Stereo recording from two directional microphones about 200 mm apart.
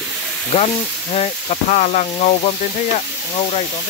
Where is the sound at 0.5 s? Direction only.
30° left (ahead or behind).